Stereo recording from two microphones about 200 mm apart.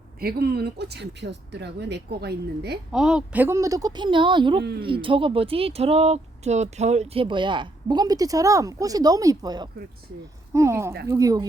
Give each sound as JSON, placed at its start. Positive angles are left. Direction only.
{"t": 0.2, "sound": "speech", "side_deg": -50}
{"t": 2.9, "sound": "a woman's voice", "side_deg": -5}